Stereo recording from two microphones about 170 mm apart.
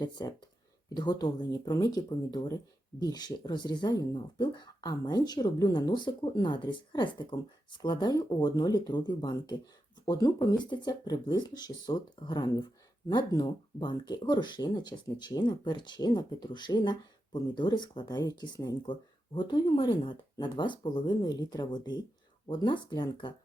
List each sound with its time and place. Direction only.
0.0 s speech: 25° left (ahead or behind)